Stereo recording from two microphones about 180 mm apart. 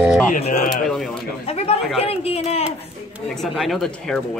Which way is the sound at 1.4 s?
35° left (ahead or behind).